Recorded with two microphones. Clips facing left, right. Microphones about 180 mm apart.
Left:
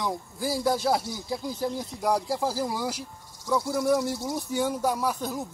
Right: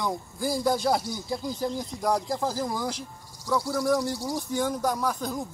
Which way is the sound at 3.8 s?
5° left (ahead or behind).